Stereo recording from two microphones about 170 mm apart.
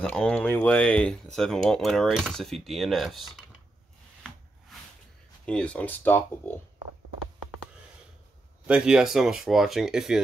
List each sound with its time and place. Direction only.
0.0 s speech: 5° left (ahead or behind)
5.4 s speech: 5° left (ahead or behind)
8.6 s speech: 5° right (ahead or behind)